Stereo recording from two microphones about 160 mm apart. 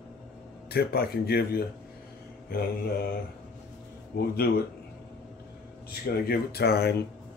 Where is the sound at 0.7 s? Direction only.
80° left.